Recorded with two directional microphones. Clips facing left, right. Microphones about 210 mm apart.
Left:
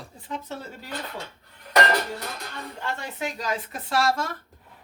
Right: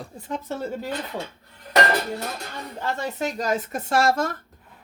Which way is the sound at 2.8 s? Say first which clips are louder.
Right 5 dB; 40° right (ahead or behind).